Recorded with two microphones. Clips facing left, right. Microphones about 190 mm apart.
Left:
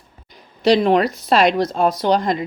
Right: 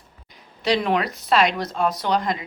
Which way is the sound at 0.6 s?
35° left (ahead or behind).